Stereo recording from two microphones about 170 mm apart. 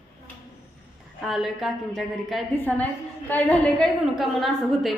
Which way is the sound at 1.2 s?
Centre (ahead or behind).